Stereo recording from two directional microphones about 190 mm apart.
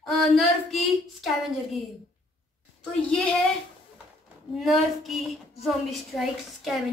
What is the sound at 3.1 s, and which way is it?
Speech, 5° left (ahead or behind).